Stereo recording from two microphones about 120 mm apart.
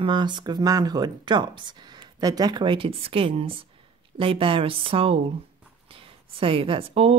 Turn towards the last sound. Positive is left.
turn(degrees=-50)  # may be behind; listen again after turning